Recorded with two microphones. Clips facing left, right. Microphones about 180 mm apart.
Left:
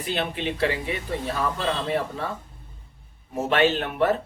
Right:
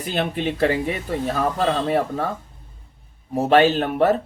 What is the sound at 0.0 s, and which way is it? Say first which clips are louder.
Speech: right 4 dB; 45° right (ahead or behind).